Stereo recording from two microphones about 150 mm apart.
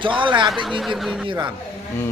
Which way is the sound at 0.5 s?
Centre (ahead or behind).